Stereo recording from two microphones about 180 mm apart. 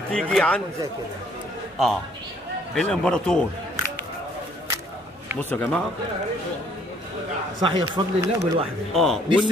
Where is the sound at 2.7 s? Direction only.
5° left (ahead or behind).